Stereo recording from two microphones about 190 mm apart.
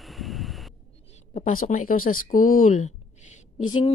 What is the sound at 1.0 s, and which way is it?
Speech, 40° left (ahead or behind).